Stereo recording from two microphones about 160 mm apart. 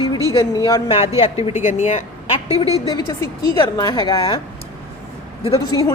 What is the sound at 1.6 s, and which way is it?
Speech, 50° left (ahead or behind).